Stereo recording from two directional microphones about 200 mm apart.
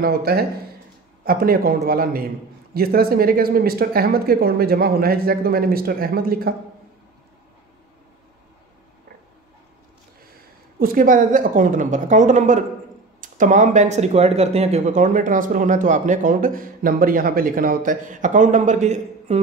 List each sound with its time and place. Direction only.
0.0 s speech: 50° right (ahead or behind)
10.8 s speech: 45° right (ahead or behind)